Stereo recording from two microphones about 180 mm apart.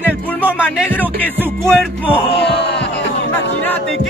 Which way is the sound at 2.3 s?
70° left (ahead or behind).